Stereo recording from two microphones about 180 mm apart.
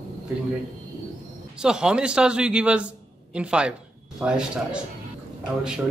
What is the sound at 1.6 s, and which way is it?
A man's voice, 5° right (ahead or behind).